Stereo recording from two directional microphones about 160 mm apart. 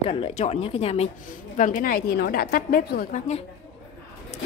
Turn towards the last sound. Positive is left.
turn(degrees=70)  # may be behind; listen again after turning